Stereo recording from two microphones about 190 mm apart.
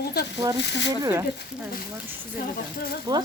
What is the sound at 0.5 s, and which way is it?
Speech, 65° left (ahead or behind).